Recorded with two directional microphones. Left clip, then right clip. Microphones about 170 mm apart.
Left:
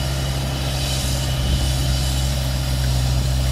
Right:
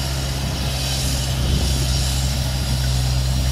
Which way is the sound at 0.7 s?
25° right (ahead or behind).